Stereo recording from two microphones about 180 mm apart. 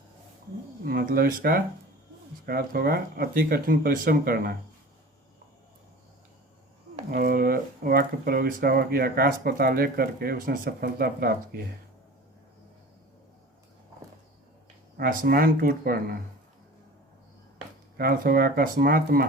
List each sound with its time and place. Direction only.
0.9 s speech: 55° right (ahead or behind)
7.1 s speech: 55° right (ahead or behind)
14.9 s speech: 50° right (ahead or behind)
17.9 s speech: 55° right (ahead or behind)